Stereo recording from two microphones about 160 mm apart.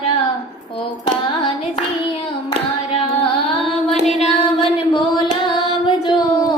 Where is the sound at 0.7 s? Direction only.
35° left (ahead or behind).